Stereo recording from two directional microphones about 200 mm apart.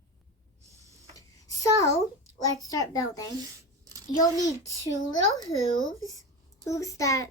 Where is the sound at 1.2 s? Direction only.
15° left (ahead or behind).